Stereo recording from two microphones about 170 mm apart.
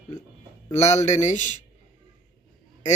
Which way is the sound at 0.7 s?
40° left (ahead or behind).